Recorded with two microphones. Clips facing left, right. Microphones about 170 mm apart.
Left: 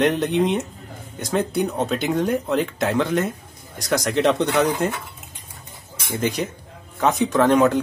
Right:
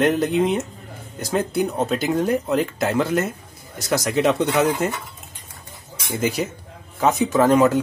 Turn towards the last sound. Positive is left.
turn(degrees=0)  # may be behind; listen again after turning